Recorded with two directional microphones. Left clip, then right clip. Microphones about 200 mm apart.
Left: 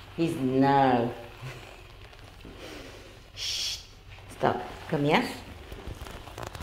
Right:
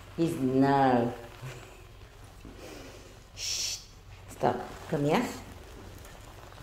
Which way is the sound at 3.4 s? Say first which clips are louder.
Left 2 dB; 5° right (ahead or behind).